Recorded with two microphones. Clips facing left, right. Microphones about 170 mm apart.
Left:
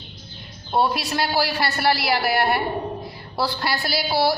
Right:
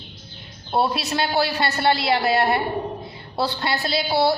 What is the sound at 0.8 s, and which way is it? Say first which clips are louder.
A woman's voice: even; 25° right (ahead or behind).